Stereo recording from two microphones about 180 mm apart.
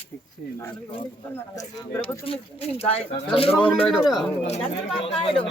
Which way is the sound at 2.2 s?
35° left (ahead or behind).